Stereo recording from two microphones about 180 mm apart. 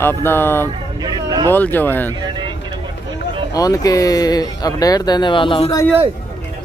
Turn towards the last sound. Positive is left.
turn(degrees=30)  # may be behind; listen again after turning